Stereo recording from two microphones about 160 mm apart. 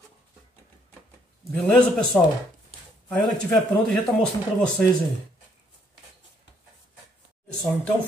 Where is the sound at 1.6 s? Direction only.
5° left (ahead or behind).